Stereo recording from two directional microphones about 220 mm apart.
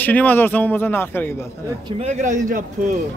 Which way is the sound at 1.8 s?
30° right (ahead or behind).